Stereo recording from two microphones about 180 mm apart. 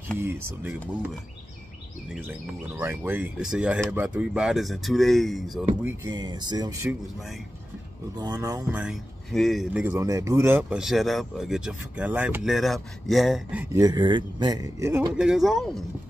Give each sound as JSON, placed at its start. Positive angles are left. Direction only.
{"t": 0.2, "sound": "speech", "side_deg": -15}
{"t": 2.8, "sound": "a man's voice", "side_deg": -10}
{"t": 5.9, "sound": "speech", "side_deg": -20}
{"t": 8.2, "sound": "speech", "side_deg": -20}
{"t": 8.7, "sound": "a man's voice", "side_deg": -5}
{"t": 13.7, "sound": "speech", "side_deg": -25}
{"t": 15.1, "sound": "a man's voice", "side_deg": -5}